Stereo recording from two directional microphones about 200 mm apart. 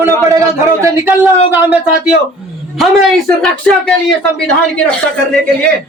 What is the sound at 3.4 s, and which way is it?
Speech, 5° left (ahead or behind).